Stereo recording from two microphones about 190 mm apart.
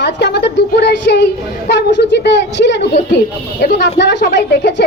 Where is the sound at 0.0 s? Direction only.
60° left (ahead or behind).